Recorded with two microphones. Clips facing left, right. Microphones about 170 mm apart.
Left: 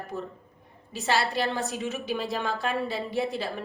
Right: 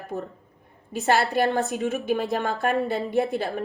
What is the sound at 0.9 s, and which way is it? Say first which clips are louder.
Speech: right 5 dB; 50° right (ahead or behind).